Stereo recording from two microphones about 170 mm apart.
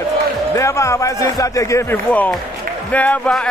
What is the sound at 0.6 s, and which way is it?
Speech, 15° left (ahead or behind).